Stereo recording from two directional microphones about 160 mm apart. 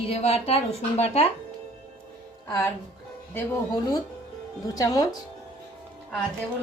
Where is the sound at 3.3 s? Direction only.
20° left (ahead or behind).